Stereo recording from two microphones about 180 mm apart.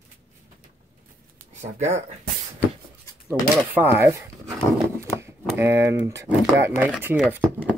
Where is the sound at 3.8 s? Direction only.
15° right (ahead or behind).